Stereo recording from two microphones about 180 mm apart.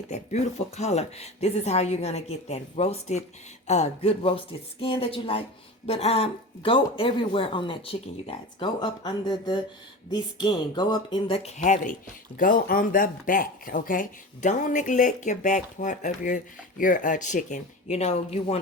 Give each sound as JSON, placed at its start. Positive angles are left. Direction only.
{"t": 0.1, "sound": "speech", "side_deg": 40}